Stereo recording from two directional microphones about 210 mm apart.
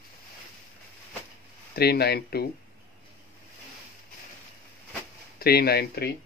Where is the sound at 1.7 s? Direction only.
50° left (ahead or behind).